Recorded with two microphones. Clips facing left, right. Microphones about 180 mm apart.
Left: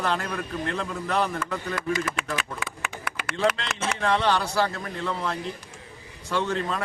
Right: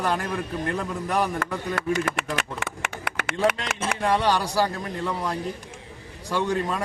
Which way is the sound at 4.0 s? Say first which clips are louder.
Right 1 dB; 10° right (ahead or behind).